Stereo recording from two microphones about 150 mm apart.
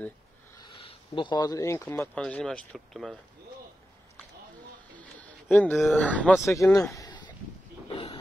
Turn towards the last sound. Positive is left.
turn(degrees=25)  # may be behind; listen again after turning